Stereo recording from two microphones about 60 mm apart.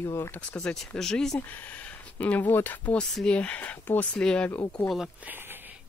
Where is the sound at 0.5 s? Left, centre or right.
Centre.